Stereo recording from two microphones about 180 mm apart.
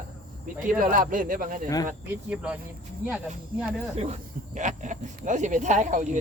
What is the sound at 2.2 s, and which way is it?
Speech, 10° right (ahead or behind).